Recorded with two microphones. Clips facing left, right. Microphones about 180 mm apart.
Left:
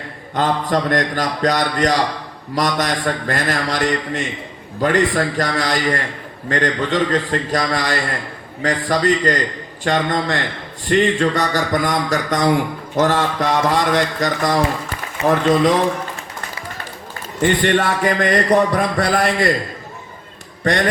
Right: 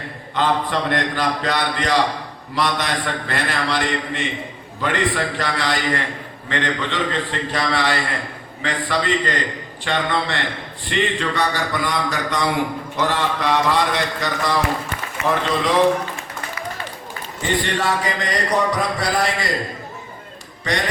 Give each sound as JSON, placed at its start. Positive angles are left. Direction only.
{"t": 0.3, "sound": "a man's voice", "side_deg": 45}
{"t": 17.4, "sound": "a man's voice", "side_deg": 55}
{"t": 20.7, "sound": "a man's voice", "side_deg": 55}